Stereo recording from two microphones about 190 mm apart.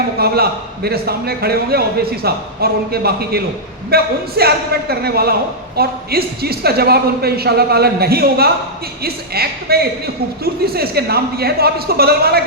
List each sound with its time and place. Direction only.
0.2 s speech: 55° right (ahead or behind)